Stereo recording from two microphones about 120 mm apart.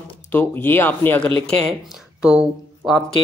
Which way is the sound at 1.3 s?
55° right (ahead or behind).